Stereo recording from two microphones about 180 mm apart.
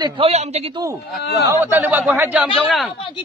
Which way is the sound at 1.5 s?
10° right (ahead or behind).